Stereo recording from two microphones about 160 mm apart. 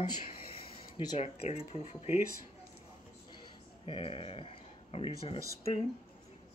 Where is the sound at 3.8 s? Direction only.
35° left (ahead or behind).